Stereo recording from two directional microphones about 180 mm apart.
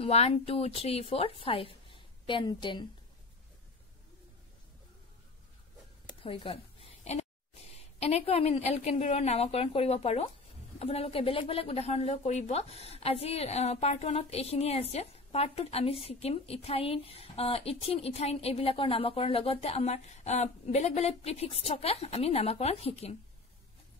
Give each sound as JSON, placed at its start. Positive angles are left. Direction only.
{"t": 0.0, "sound": "a woman's voice", "side_deg": 35}
{"t": 6.2, "sound": "a sound", "side_deg": 30}
{"t": 7.7, "sound": "a woman's voice", "side_deg": 35}